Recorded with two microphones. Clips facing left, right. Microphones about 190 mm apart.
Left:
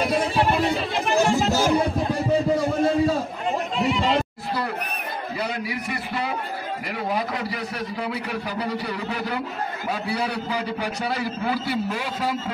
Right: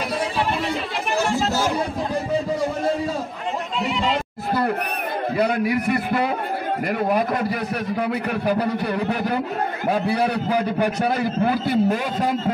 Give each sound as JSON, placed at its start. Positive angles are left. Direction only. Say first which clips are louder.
{"t": 1.1, "sound": "chatter", "louder": "left 2 dB", "side_deg": 15}
{"t": 5.4, "sound": "a sound", "louder": "right 10 dB", "side_deg": -55}
{"t": 7.1, "sound": "a man's voice", "louder": "right 3 dB", "side_deg": -55}